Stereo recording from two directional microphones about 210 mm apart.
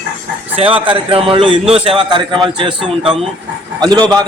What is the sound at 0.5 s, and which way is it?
A man's voice, 25° right (ahead or behind).